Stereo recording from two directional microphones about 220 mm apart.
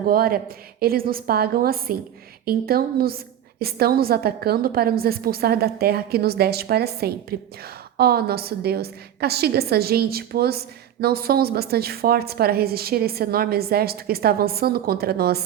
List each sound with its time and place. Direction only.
0.1 s a woman's voice: 40° right (ahead or behind)